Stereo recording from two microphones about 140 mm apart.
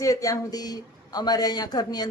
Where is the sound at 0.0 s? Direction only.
25° left (ahead or behind).